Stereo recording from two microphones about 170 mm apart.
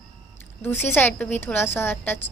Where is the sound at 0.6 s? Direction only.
10° left (ahead or behind).